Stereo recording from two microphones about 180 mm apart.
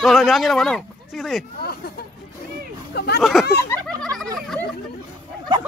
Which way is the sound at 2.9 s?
60° left (ahead or behind).